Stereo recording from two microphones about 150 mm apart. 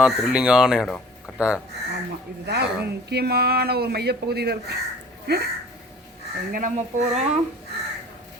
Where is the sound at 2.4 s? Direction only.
90° right.